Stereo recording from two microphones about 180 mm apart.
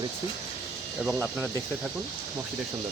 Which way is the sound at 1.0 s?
5° right (ahead or behind).